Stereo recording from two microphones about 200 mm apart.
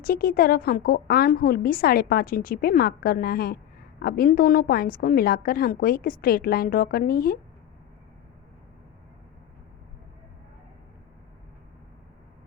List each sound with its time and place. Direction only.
0.0 s a woman's voice: 50° left (ahead or behind)